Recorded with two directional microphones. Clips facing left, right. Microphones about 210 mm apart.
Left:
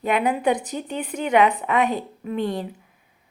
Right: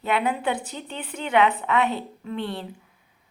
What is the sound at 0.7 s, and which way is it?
Speech, 45° left (ahead or behind).